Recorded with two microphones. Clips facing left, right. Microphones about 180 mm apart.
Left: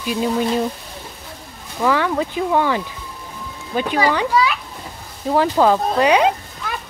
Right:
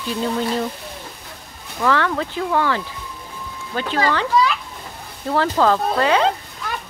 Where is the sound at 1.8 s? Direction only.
15° left (ahead or behind).